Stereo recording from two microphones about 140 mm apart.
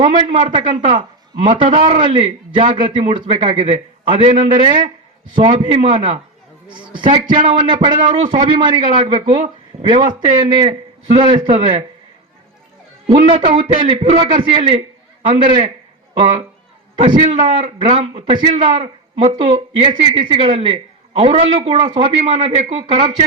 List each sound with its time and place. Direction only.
0.0 s a man's voice: 35° right (ahead or behind)
13.1 s a man's voice: 35° right (ahead or behind)
17.2 s a man's voice: 35° right (ahead or behind)
22.8 s a man's voice: 35° right (ahead or behind)